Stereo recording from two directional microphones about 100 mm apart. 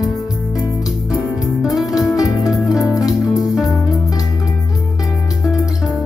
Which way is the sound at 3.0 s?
40° left (ahead or behind).